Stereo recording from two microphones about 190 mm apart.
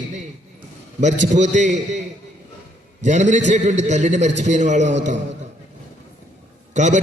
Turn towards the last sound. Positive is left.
turn(degrees=-40)  # may be behind; listen again after turning